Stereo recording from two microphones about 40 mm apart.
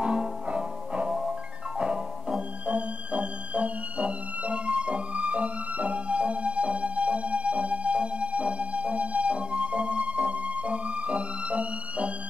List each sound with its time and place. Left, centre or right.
0.0 s music: right
2.6 s music: right